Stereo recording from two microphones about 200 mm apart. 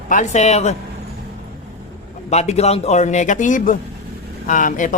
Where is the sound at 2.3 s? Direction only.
35° left (ahead or behind).